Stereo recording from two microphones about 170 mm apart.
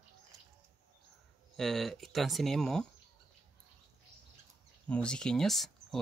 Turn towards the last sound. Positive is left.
turn(degrees=0)  # may be behind; listen again after turning